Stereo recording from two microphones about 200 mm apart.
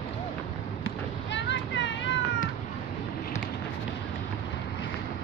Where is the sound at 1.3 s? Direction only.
60° left (ahead or behind).